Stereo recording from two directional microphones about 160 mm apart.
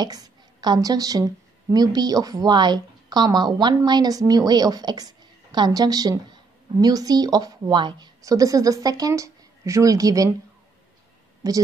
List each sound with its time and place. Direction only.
0.0 s a woman's voice: 25° right (ahead or behind)
11.4 s a woman's voice: 20° right (ahead or behind)